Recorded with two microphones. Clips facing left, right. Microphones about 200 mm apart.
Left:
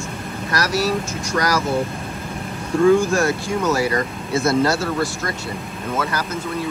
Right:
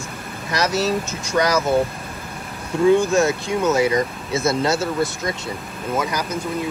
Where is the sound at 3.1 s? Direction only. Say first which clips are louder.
Right 1 dB; 20° right (ahead or behind).